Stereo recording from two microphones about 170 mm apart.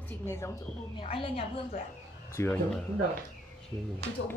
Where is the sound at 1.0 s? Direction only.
35° left (ahead or behind).